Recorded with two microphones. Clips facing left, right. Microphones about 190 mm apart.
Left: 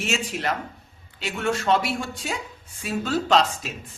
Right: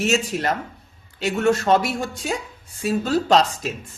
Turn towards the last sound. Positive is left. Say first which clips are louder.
# right 3 dB
turn(degrees=-40)  # may be behind; listen again after turning